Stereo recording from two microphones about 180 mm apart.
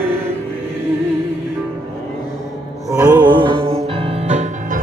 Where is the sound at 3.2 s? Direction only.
25° right (ahead or behind).